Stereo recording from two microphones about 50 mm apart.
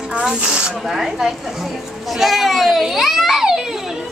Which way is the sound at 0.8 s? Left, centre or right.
Centre.